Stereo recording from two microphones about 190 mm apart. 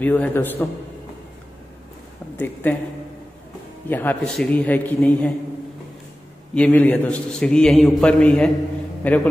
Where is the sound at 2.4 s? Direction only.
10° left (ahead or behind).